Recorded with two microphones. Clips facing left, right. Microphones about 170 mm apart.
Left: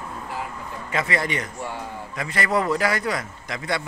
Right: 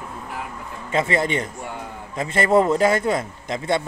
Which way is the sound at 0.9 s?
25° right (ahead or behind).